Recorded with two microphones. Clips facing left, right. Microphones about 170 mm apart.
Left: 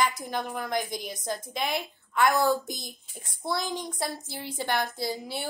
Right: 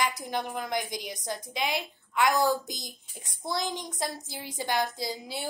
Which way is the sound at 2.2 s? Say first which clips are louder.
Left 2 dB; 20° right (ahead or behind).